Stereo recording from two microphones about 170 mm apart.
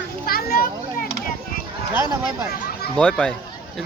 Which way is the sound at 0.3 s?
65° left (ahead or behind).